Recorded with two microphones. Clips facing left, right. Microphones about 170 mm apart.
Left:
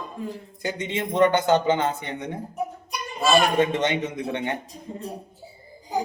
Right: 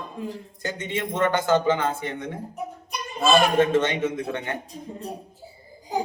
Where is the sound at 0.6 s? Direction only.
15° left (ahead or behind).